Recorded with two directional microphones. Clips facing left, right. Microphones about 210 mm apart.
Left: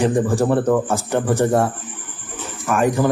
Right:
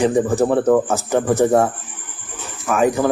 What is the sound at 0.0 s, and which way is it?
A man's voice, 5° right (ahead or behind).